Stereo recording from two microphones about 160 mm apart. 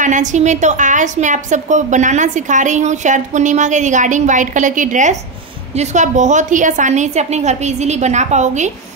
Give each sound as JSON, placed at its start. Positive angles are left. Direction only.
{"t": 0.0, "sound": "a woman's voice", "side_deg": -50}